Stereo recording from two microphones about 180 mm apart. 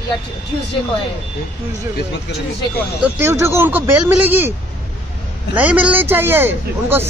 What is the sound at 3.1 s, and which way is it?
A man's voice, 15° right (ahead or behind).